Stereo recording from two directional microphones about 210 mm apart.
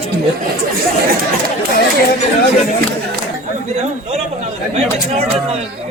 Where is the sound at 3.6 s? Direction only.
30° right (ahead or behind).